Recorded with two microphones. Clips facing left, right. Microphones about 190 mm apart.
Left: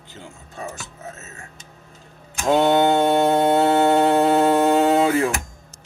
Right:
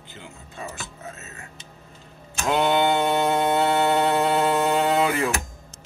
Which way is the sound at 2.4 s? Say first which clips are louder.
Left 5 dB; 40° left (ahead or behind).